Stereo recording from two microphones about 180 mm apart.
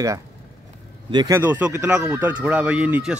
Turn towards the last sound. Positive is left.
turn(degrees=-10)  # may be behind; listen again after turning